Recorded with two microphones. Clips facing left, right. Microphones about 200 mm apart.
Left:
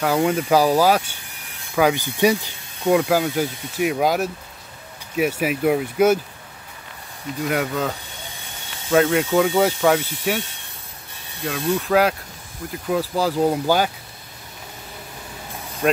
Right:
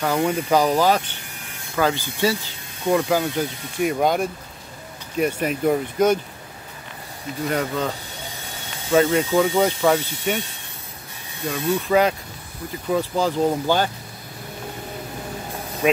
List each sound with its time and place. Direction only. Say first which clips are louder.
0.0 s speech: left 2 dB; 5° left (ahead or behind)
7.4 s speech: left 1 dB; 5° left (ahead or behind)
8.9 s speech: even; centre (ahead or behind)
11.4 s speech: even; 5° left (ahead or behind)
15.8 s speech: even; 5° right (ahead or behind)